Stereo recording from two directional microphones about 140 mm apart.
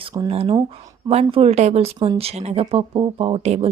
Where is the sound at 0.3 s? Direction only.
45° right (ahead or behind).